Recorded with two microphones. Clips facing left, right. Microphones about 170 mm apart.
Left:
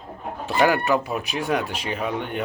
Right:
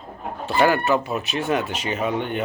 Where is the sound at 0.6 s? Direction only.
Centre (ahead or behind).